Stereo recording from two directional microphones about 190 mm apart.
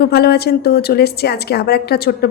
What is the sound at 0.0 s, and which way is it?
A woman's voice, 55° left (ahead or behind).